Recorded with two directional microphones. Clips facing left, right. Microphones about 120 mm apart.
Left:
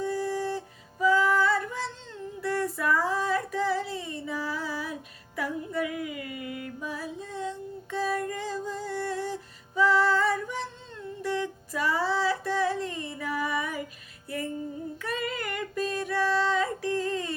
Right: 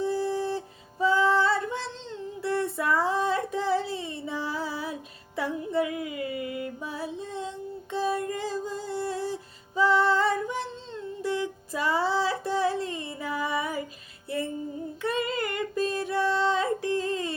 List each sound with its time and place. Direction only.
0.0 s music: 25° right (ahead or behind)
2.4 s female singing: 25° right (ahead or behind)
11.7 s female singing: 25° right (ahead or behind)
15.0 s a sound: 25° right (ahead or behind)